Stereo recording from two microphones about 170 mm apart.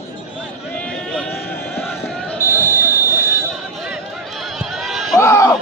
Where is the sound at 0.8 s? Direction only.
5° left (ahead or behind).